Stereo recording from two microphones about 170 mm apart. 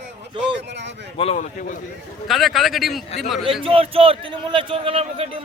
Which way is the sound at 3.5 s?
30° right (ahead or behind).